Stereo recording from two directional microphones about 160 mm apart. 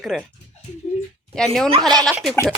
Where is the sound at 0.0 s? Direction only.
Centre (ahead or behind).